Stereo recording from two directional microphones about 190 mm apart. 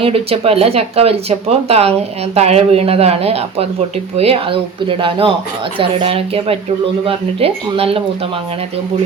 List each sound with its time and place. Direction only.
0.0 s speech: 30° right (ahead or behind)